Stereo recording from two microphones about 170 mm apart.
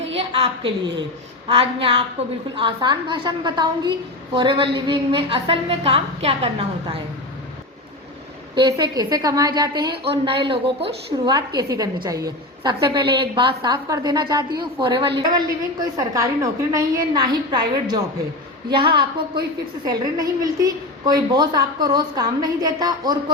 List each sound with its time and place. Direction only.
0.2 s a sound: 35° right (ahead or behind)
1.5 s a woman's voice: 35° right (ahead or behind)
8.5 s a woman's voice: 25° right (ahead or behind)